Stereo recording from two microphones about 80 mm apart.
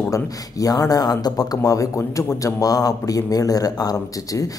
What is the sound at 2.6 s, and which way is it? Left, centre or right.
Speech, left.